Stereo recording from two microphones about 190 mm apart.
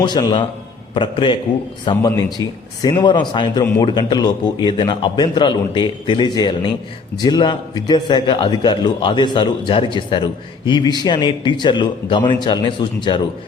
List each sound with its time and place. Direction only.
0.0 s speech: 25° left (ahead or behind)